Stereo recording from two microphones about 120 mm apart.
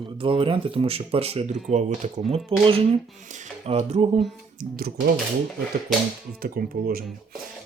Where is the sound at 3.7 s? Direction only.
60° right (ahead or behind).